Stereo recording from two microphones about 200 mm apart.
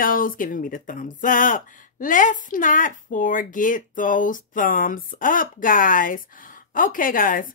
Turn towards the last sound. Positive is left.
turn(degrees=45)  # may be behind; listen again after turning